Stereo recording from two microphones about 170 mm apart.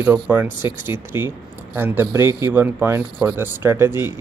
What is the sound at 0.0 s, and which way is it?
Speech, 10° right (ahead or behind).